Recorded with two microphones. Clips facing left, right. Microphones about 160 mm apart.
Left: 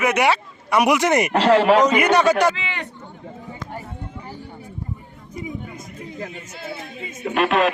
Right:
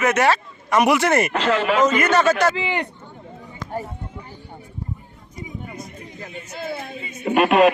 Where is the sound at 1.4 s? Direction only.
35° left (ahead or behind).